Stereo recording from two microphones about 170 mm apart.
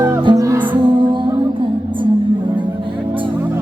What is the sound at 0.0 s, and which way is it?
Music, 25° right (ahead or behind).